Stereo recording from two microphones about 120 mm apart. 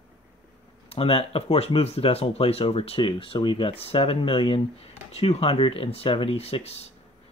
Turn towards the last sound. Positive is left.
turn(degrees=60)  # may be behind; listen again after turning